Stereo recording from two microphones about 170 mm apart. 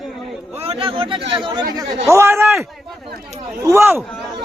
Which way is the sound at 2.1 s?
15° right (ahead or behind).